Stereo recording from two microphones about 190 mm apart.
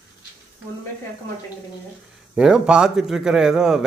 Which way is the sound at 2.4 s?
5° right (ahead or behind).